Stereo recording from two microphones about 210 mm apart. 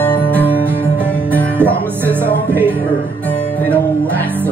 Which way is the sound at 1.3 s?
10° right (ahead or behind).